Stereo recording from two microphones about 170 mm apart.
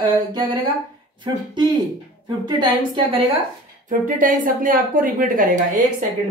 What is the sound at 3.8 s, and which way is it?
Speech, 55° right (ahead or behind).